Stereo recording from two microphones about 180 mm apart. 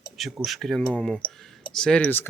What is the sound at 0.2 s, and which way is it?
Speech, centre (ahead or behind).